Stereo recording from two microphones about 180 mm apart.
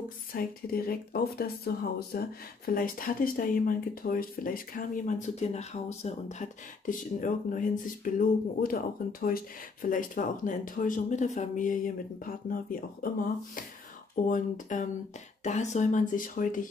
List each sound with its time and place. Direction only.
0.3 s speech: 55° left (ahead or behind)
14.2 s speech: 45° left (ahead or behind)